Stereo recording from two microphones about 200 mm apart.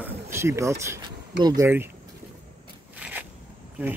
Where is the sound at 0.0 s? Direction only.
15° right (ahead or behind).